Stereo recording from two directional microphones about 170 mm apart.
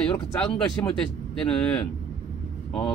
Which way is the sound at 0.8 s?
15° left (ahead or behind).